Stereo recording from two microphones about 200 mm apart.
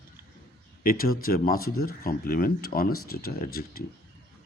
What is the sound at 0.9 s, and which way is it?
A man's voice, 45° left (ahead or behind).